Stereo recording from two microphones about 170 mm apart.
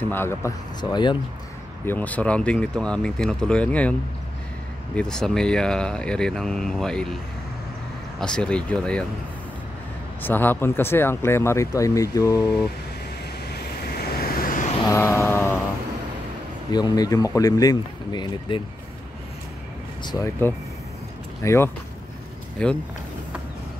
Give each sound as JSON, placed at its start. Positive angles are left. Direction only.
{"t": 0.1, "sound": "speech", "side_deg": 15}
{"t": 0.7, "sound": "speech", "side_deg": 25}
{"t": 1.9, "sound": "speech", "side_deg": 10}
{"t": 4.9, "sound": "speech", "side_deg": 5}
{"t": 8.2, "sound": "speech", "side_deg": 5}
{"t": 10.2, "sound": "speech", "side_deg": 10}
{"t": 13.5, "sound": "vehicle", "side_deg": 65}
{"t": 14.9, "sound": "mantra", "side_deg": 15}
{"t": 16.7, "sound": "speech", "side_deg": 25}
{"t": 20.0, "sound": "speech", "side_deg": 25}
{"t": 22.6, "sound": "speech", "side_deg": 5}